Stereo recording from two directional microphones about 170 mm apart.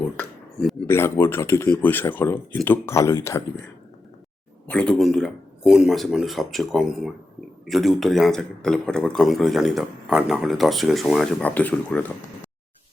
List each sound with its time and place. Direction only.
0.9 s speech: 15° left (ahead or behind)
4.7 s speech: 5° left (ahead or behind)